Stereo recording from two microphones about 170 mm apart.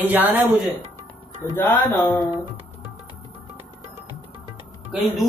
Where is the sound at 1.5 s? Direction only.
15° left (ahead or behind).